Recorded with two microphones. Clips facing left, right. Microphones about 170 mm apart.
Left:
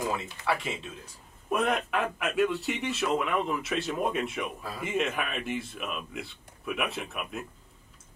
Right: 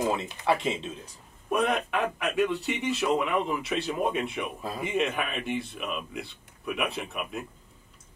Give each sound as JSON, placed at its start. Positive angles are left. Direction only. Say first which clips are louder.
{"t": 0.0, "sound": "speech", "louder": "right 4 dB", "side_deg": -25}
{"t": 1.5, "sound": "a man's voice", "louder": "right 1 dB", "side_deg": 0}